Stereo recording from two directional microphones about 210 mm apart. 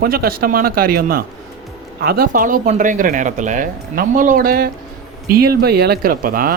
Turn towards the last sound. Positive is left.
turn(degrees=-45)  # may be behind; listen again after turning